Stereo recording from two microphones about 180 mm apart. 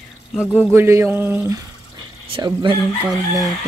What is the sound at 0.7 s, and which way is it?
Speech, 15° right (ahead or behind).